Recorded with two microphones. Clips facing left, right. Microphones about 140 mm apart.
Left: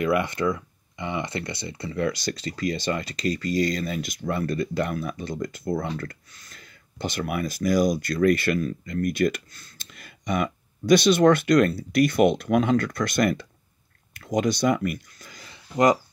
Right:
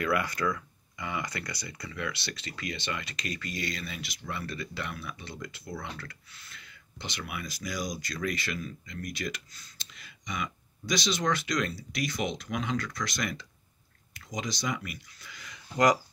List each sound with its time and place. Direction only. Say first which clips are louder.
0.0 s speech: left 6 dB; 25° left (ahead or behind)